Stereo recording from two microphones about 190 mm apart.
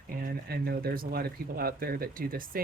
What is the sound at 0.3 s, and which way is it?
Speech, 55° right (ahead or behind).